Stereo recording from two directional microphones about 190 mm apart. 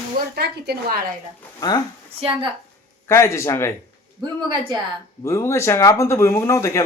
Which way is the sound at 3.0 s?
15° left (ahead or behind).